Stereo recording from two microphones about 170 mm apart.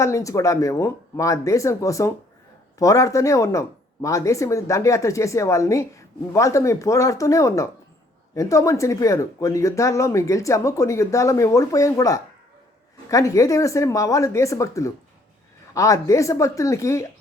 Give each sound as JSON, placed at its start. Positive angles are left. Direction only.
{"t": 0.0, "sound": "speech", "side_deg": 20}